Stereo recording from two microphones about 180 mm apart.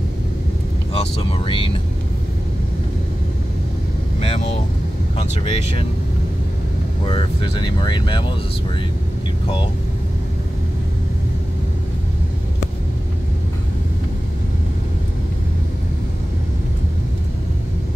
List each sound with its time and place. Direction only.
0.9 s speech: 30° left (ahead or behind)
4.2 s speech: 35° left (ahead or behind)
7.1 s speech: 30° left (ahead or behind)